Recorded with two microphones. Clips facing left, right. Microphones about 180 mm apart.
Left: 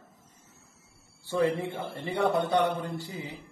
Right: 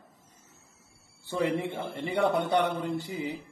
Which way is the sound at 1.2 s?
20° right (ahead or behind).